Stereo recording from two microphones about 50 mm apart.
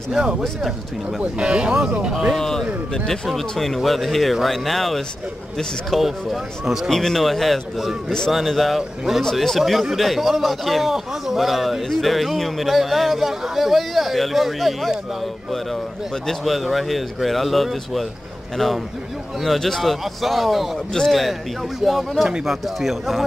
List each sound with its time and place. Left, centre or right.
0.1 s speech: centre
2.3 s a man's voice: centre
6.9 s a man's voice: centre
9.2 s a man's voice: centre
16.3 s a man's voice: centre
19.4 s a man's voice: centre